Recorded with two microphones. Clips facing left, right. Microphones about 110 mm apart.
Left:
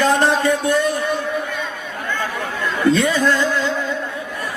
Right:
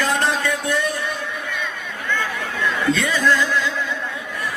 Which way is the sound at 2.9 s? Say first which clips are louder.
Left 3 dB; 35° left (ahead or behind).